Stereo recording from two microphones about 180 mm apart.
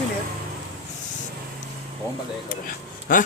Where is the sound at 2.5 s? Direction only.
50° left (ahead or behind).